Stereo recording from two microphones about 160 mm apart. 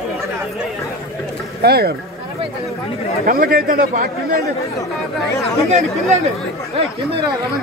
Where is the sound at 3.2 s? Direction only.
65° right (ahead or behind).